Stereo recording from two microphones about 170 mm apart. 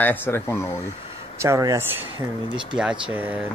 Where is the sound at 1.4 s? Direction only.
20° right (ahead or behind).